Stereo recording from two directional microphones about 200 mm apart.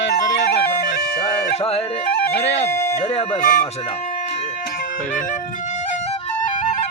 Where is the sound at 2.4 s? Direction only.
65° left (ahead or behind).